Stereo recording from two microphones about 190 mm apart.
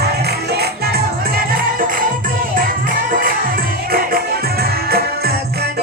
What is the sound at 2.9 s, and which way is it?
Music, 45° right (ahead or behind).